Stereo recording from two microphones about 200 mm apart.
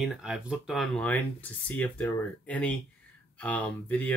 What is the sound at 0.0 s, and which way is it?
Speech, 5° right (ahead or behind).